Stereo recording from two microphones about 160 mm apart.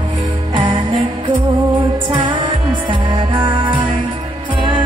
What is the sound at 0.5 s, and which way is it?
Music, 30° right (ahead or behind).